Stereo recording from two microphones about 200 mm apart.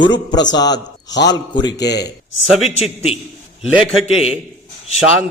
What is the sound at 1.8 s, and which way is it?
Speech, 55° left (ahead or behind).